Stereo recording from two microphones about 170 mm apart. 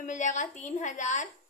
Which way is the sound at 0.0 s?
45° left (ahead or behind).